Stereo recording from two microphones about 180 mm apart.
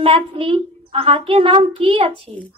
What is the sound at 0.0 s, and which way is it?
A child's voice, 30° right (ahead or behind).